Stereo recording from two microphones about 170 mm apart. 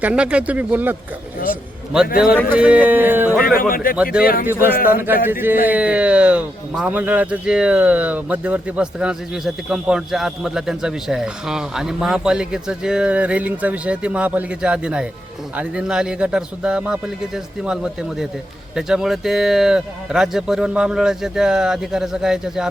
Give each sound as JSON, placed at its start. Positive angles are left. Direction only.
{"t": 0.0, "sound": "speech", "side_deg": -5}
{"t": 2.2, "sound": "speech", "side_deg": -5}
{"t": 3.4, "sound": "a man's voice", "side_deg": 60}
{"t": 3.9, "sound": "speech", "side_deg": -5}
{"t": 4.2, "sound": "a man's voice", "side_deg": 60}
{"t": 5.2, "sound": "speech", "side_deg": -10}